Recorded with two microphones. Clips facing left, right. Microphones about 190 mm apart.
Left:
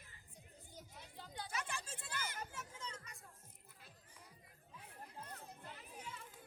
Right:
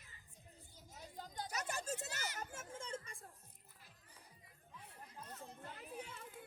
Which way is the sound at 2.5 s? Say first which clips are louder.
Right 2 dB; 50° right (ahead or behind).